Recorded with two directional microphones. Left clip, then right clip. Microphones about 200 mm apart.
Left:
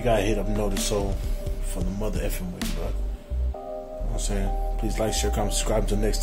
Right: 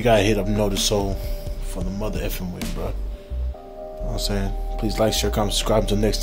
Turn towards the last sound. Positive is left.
turn(degrees=-30)  # may be behind; listen again after turning